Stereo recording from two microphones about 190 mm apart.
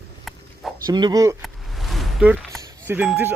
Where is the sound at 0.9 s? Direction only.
25° right (ahead or behind).